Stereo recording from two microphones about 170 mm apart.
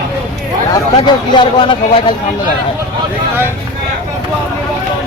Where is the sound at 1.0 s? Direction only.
25° left (ahead or behind).